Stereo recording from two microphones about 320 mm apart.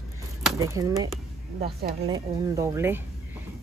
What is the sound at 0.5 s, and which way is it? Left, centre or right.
Speech, centre.